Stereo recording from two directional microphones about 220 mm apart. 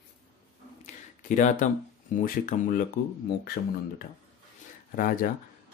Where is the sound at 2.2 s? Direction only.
40° left (ahead or behind).